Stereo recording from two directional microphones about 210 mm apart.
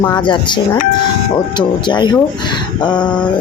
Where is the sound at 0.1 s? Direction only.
20° left (ahead or behind).